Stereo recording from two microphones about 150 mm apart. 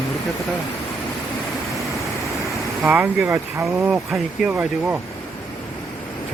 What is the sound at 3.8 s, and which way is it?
Speech, 5° right (ahead or behind).